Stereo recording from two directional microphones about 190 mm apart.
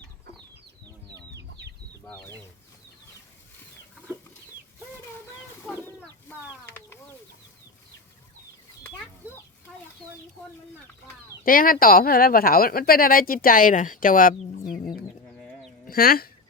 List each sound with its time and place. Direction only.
5.7 s chicken: 10° left (ahead or behind)
11.4 s speech: 45° left (ahead or behind)
15.4 s chicken: centre (ahead or behind)
15.9 s speech: 50° left (ahead or behind)